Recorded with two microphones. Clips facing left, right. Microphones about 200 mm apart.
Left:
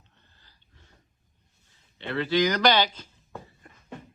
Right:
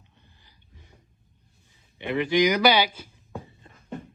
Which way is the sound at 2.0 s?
15° right (ahead or behind).